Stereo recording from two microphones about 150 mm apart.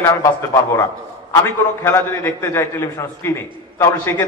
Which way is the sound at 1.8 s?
15° left (ahead or behind).